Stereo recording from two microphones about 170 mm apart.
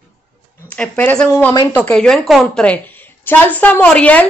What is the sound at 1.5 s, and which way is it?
Speech, 25° left (ahead or behind).